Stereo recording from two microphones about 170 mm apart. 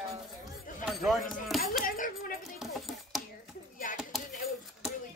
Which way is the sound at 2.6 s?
Centre (ahead or behind).